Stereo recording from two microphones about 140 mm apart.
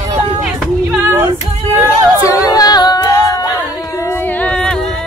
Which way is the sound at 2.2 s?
25° left (ahead or behind).